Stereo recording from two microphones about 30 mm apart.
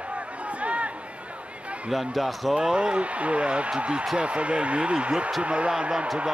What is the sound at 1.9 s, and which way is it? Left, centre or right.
Speech, centre.